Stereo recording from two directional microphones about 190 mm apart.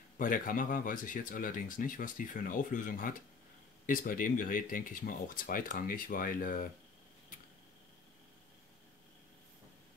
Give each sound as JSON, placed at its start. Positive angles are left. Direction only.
{"t": 0.2, "sound": "speech", "side_deg": 45}